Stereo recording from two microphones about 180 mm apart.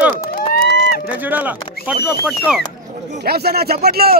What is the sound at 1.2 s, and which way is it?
Speech, 10° right (ahead or behind).